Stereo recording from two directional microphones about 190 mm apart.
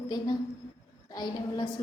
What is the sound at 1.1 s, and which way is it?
Speech, 20° left (ahead or behind).